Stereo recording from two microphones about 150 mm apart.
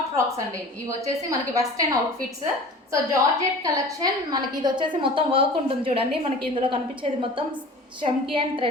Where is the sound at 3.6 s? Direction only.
25° right (ahead or behind).